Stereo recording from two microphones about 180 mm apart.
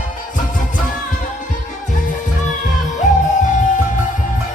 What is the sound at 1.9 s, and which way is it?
Music, 45° left (ahead or behind).